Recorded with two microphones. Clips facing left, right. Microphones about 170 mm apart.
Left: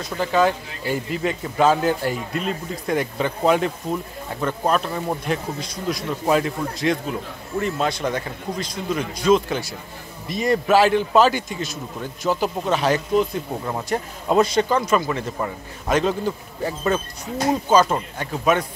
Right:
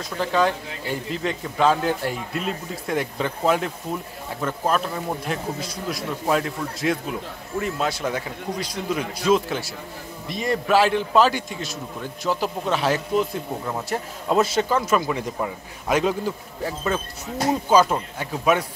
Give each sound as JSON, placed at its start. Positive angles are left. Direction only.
{"t": 0.0, "sound": "a man's voice", "side_deg": 5}